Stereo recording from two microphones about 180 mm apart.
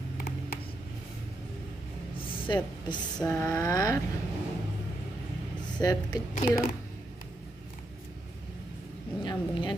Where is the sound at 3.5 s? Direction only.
15° left (ahead or behind).